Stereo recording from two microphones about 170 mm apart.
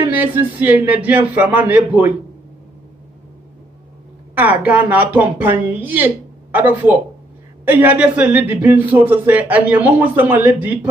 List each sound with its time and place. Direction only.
0.1 s speech: 10° right (ahead or behind)
4.4 s speech: 10° right (ahead or behind)